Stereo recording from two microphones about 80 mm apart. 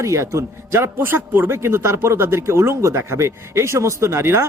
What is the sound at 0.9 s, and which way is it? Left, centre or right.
Speech, right.